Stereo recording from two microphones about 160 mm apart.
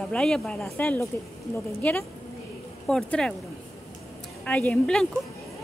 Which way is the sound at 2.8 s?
5° left (ahead or behind).